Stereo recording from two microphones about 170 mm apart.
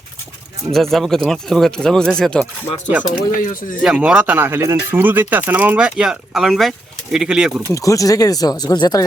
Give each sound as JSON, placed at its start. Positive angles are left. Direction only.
{"t": 0.7, "sound": "speech", "side_deg": 0}
{"t": 3.0, "sound": "speech", "side_deg": 50}
{"t": 3.8, "sound": "speech", "side_deg": -5}
{"t": 7.7, "sound": "speech", "side_deg": 20}